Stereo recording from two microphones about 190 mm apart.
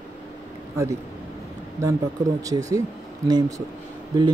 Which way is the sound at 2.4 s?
15° right (ahead or behind).